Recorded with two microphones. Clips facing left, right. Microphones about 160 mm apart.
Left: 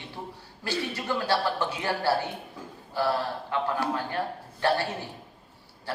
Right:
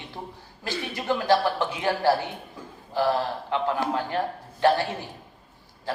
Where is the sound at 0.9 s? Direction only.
15° right (ahead or behind).